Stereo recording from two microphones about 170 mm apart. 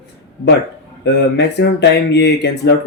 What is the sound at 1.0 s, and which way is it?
Speech, 85° left.